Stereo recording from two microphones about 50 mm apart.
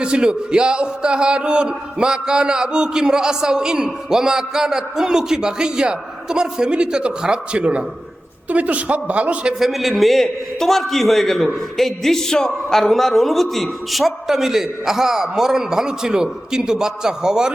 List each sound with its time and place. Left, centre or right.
0.0 s a man's voice: centre
9.6 s a man's voice: centre